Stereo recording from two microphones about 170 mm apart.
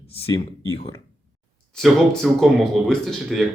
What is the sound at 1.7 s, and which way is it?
Speech, centre (ahead or behind).